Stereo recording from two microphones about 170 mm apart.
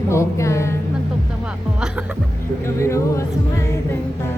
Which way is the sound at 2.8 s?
15° left (ahead or behind).